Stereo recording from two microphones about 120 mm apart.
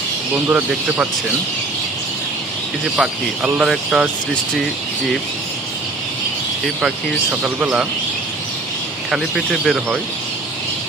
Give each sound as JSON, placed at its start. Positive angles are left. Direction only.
{"t": 0.4, "sound": "speech", "side_deg": -15}
{"t": 2.8, "sound": "speech", "side_deg": -5}
{"t": 6.8, "sound": "speech", "side_deg": -10}
{"t": 9.0, "sound": "speech", "side_deg": 0}